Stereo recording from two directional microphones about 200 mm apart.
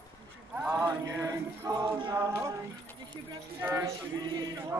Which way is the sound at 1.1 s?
15° right (ahead or behind).